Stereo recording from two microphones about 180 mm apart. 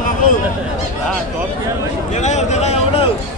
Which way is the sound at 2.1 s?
40° left (ahead or behind).